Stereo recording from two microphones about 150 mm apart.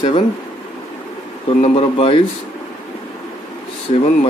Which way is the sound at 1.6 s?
45° left (ahead or behind).